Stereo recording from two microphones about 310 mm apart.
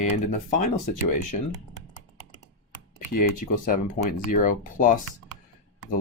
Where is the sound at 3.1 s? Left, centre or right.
Left.